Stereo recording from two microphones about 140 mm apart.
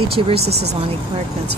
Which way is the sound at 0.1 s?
45° right (ahead or behind).